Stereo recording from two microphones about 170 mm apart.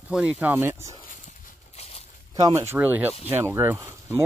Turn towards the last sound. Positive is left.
turn(degrees=-15)  # may be behind; listen again after turning